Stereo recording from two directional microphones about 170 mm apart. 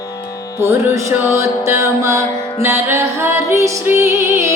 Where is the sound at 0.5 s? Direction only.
15° right (ahead or behind).